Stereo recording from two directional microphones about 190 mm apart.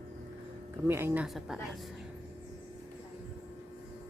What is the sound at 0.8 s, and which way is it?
Speech, 15° right (ahead or behind).